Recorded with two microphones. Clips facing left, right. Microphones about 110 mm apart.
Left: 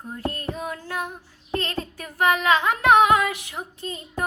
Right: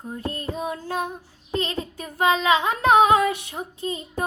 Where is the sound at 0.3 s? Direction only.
20° right (ahead or behind).